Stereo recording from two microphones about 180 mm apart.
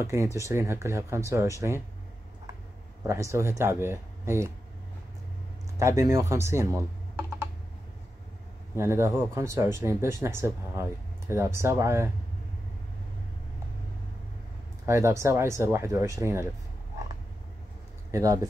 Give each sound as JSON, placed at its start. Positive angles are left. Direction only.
{"t": 0.0, "sound": "speech", "side_deg": -15}
{"t": 3.0, "sound": "speech", "side_deg": -15}
{"t": 5.8, "sound": "speech", "side_deg": -15}
{"t": 8.7, "sound": "speech", "side_deg": -15}
{"t": 14.9, "sound": "speech", "side_deg": -15}
{"t": 18.1, "sound": "speech", "side_deg": -15}